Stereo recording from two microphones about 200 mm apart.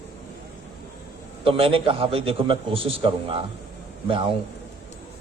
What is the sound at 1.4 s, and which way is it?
A man's voice, 25° right (ahead or behind).